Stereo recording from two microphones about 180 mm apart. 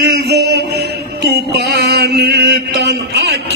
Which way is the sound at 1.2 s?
65° right (ahead or behind).